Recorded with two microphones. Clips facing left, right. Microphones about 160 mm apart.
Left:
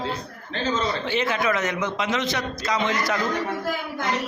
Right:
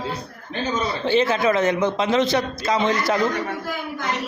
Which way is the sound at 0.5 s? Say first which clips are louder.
Right 1 dB; 10° right (ahead or behind).